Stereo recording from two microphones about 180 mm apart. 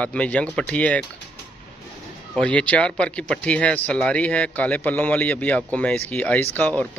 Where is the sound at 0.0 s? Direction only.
5° left (ahead or behind).